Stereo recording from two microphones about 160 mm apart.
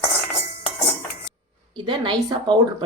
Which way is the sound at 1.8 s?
30° right (ahead or behind).